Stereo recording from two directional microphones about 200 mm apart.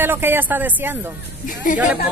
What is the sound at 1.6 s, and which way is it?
Speech, 40° left (ahead or behind).